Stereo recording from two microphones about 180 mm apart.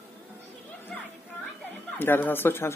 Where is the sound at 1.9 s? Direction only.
10° left (ahead or behind).